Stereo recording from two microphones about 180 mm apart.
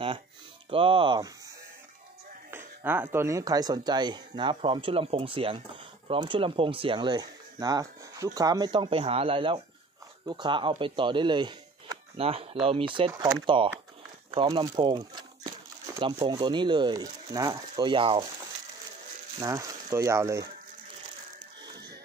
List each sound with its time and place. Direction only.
0.7 s speech: 30° right (ahead or behind)
2.5 s speech: 10° right (ahead or behind); by 18.2 s 30° right (ahead or behind)
19.4 s speech: 15° right (ahead or behind)